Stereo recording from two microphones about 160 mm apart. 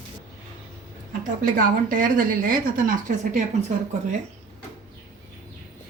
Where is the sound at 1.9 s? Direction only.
55° right (ahead or behind).